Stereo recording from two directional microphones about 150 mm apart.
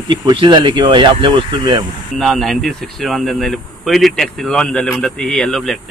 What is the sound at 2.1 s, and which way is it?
Speech, centre (ahead or behind).